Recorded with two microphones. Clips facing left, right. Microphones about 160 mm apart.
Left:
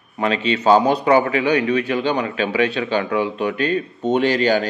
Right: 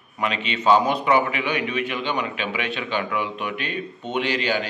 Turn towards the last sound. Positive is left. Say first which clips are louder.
# left 7 dB
turn(degrees=40)  # may be behind; listen again after turning